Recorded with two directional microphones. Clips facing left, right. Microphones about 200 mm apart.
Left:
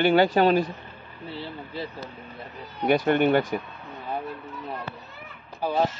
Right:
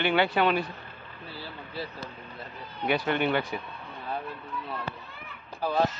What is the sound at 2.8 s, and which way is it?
Speech, 45° left (ahead or behind).